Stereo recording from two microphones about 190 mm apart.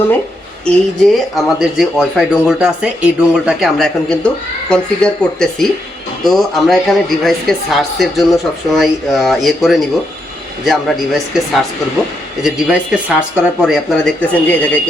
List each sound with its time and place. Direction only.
1.4 s speech: centre (ahead or behind)